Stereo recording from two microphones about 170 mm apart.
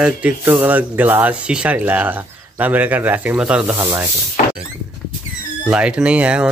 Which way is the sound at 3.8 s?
15° right (ahead or behind).